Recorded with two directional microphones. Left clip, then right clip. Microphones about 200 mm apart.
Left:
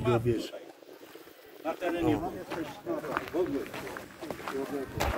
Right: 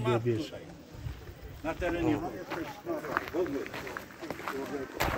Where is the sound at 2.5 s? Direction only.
10° left (ahead or behind).